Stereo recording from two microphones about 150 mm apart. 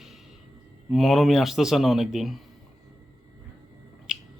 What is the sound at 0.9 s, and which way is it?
A man's voice, centre (ahead or behind).